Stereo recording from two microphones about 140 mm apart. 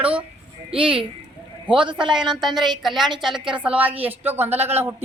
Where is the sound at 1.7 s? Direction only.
10° right (ahead or behind).